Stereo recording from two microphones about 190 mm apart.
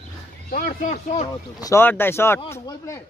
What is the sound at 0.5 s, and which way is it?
Speech, 50° left (ahead or behind).